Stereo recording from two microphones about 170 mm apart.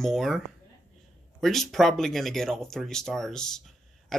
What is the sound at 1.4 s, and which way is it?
Speech, centre (ahead or behind).